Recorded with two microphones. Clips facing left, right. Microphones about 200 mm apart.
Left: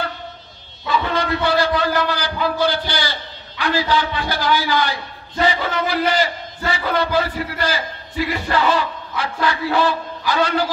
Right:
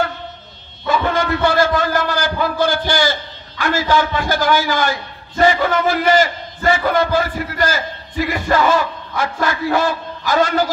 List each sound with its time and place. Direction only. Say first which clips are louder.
0.8 s a man's voice: right 3 dB; 45° right (ahead or behind)